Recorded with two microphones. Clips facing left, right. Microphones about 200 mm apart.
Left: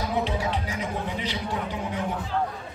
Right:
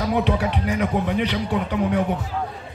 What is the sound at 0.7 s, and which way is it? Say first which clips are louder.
A man's voice: right 8 dB; 65° right (ahead or behind).